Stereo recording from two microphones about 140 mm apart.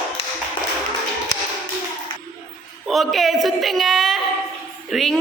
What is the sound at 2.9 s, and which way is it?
A woman's voice, centre (ahead or behind).